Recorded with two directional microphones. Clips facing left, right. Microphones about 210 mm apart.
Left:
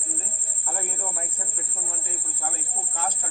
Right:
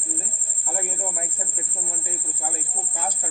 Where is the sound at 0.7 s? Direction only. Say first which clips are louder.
Right 4 dB; 10° right (ahead or behind).